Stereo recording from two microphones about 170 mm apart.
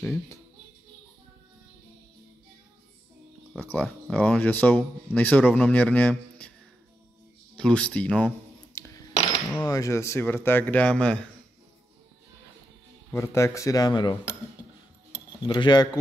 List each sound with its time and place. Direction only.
0.0 s speech: 15° left (ahead or behind)
3.5 s speech: 10° left (ahead or behind)
7.5 s speech: 5° left (ahead or behind)
8.7 s coin: 20° left (ahead or behind)
9.7 s speech: 20° left (ahead or behind)
13.1 s speech: 15° left (ahead or behind)
15.4 s speech: 25° left (ahead or behind)